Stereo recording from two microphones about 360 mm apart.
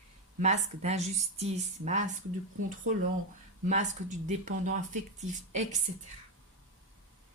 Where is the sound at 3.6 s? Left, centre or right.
Centre.